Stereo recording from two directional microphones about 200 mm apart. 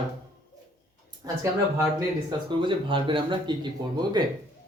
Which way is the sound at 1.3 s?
20° right (ahead or behind).